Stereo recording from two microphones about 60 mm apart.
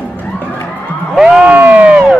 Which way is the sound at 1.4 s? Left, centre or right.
Right.